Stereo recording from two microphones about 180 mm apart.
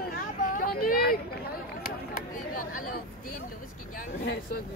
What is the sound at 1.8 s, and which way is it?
Chatter, 55° left (ahead or behind).